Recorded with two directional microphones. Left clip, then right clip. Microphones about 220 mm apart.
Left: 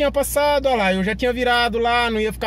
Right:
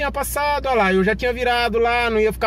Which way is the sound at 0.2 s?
15° left (ahead or behind).